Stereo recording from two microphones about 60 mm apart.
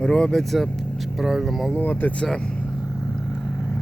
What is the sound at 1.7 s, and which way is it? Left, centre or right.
Speech, left.